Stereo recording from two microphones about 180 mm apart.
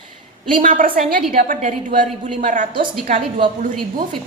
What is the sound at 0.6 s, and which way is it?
A woman's voice, 50° right (ahead or behind).